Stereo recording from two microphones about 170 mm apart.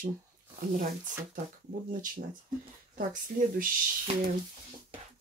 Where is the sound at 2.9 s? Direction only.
55° right (ahead or behind).